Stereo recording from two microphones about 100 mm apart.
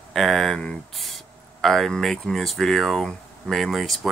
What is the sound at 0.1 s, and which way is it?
Speech, 5° left (ahead or behind).